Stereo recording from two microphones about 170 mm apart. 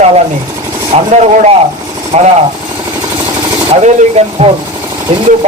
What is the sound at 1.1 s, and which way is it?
Speech, 40° right (ahead or behind).